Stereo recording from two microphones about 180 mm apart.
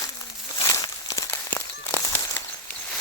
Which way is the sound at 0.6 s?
20° left (ahead or behind).